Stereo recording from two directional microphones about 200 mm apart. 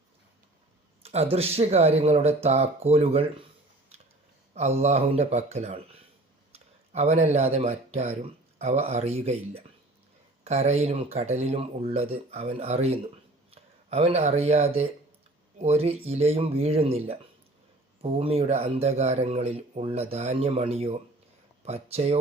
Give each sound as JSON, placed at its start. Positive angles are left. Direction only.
{"t": 1.0, "sound": "speech", "side_deg": -30}
{"t": 4.8, "sound": "speech", "side_deg": -30}